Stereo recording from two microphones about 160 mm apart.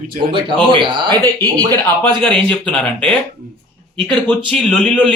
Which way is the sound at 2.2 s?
5° left (ahead or behind).